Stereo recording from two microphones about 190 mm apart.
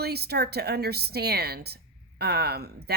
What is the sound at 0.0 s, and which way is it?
Speech, 55° right (ahead or behind).